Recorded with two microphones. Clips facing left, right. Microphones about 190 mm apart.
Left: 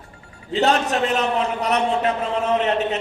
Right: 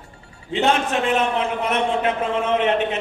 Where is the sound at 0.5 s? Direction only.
40° left (ahead or behind).